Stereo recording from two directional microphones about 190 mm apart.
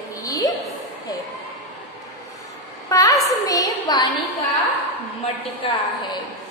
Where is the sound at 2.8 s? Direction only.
20° left (ahead or behind).